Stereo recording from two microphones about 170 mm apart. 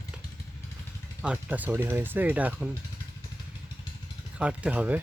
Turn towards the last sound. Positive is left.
turn(degrees=-10)  # may be behind; listen again after turning